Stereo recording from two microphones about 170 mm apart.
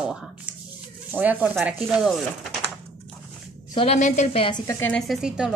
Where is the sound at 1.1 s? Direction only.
10° right (ahead or behind).